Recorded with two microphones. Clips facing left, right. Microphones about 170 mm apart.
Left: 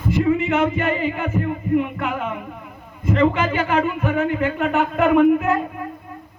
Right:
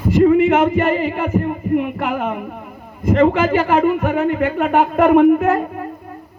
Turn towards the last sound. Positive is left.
turn(degrees=-45)  # may be behind; listen again after turning